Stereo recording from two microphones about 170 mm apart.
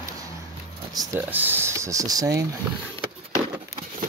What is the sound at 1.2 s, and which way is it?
Speech, 10° right (ahead or behind).